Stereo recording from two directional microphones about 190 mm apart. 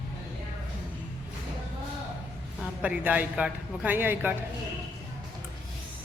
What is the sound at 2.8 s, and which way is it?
A man's voice, 10° right (ahead or behind).